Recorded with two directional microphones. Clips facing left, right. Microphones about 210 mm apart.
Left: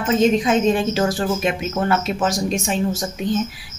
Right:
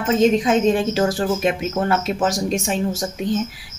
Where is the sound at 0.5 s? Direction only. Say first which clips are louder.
Even; 45° right (ahead or behind).